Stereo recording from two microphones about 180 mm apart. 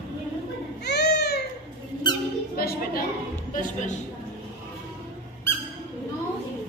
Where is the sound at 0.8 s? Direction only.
65° left (ahead or behind).